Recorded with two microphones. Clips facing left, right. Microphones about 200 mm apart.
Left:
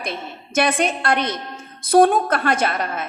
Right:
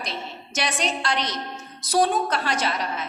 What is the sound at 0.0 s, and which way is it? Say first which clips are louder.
A woman's voice: left 4 dB; 55° left (ahead or behind).